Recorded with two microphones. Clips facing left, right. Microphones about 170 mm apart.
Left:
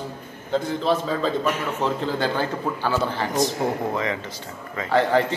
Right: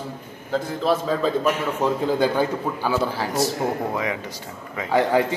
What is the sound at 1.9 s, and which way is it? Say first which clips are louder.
A man's voice: right 4 dB; 10° right (ahead or behind).